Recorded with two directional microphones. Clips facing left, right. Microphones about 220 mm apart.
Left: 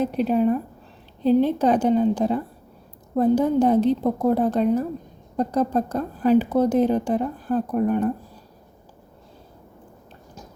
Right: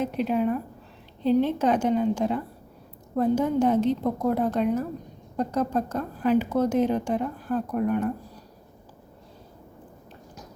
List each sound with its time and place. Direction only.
0.0 s a woman's voice: 35° left (ahead or behind)